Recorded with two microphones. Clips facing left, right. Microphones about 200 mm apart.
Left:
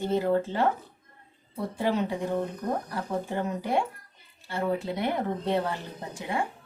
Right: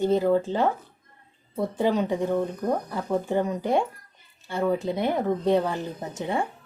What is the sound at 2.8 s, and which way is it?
A woman's voice, 20° right (ahead or behind).